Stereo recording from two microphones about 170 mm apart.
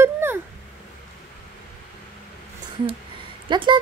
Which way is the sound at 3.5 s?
25° right (ahead or behind).